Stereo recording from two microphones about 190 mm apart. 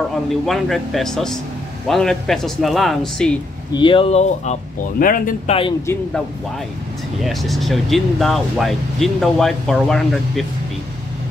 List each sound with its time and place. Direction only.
0.1 s speech: centre (ahead or behind)
3.7 s speech: 25° left (ahead or behind)
4.9 s speech: 50° left (ahead or behind)
5.5 s speech: 25° left (ahead or behind)
7.2 s speech: centre (ahead or behind)